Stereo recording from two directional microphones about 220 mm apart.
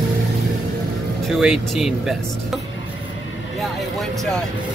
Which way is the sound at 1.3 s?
Centre (ahead or behind).